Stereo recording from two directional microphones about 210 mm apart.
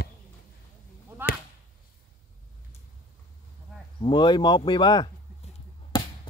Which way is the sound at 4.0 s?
20° left (ahead or behind).